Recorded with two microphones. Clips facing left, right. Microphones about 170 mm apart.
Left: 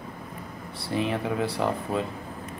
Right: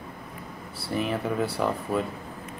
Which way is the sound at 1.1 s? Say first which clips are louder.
Even; 5° right (ahead or behind).